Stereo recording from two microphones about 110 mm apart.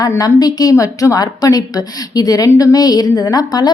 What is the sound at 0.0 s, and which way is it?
A woman's voice, 30° left (ahead or behind).